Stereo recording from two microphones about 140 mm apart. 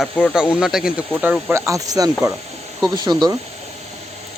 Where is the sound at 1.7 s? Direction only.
25° right (ahead or behind).